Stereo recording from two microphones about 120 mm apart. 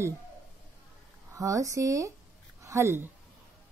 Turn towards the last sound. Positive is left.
turn(degrees=-20)  # may be behind; listen again after turning